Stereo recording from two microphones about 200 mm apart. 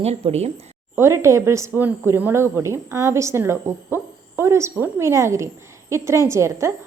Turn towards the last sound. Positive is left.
turn(degrees=-15)  # may be behind; listen again after turning